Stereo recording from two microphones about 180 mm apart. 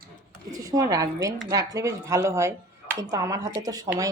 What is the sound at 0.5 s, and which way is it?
A woman's voice, 20° right (ahead or behind).